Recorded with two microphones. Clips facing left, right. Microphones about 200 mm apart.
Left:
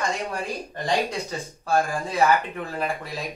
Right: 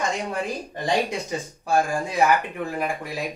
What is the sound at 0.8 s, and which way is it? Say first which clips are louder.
Speech: right 1 dB; 15° right (ahead or behind).